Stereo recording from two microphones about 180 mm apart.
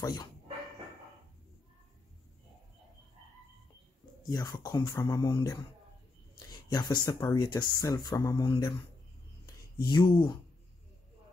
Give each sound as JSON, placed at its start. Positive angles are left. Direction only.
{"t": 0.0, "sound": "speech", "side_deg": 20}
{"t": 4.3, "sound": "speech", "side_deg": 20}
{"t": 9.8, "sound": "speech", "side_deg": 25}